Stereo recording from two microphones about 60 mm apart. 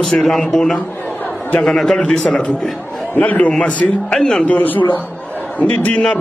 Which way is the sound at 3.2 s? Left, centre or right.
Left.